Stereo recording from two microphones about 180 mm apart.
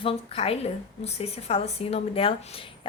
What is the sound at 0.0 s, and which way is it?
A woman's voice, 30° left (ahead or behind).